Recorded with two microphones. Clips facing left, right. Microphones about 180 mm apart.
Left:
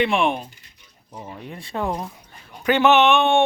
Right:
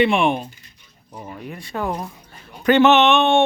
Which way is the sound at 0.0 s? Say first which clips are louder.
Right 3 dB; centre (ahead or behind).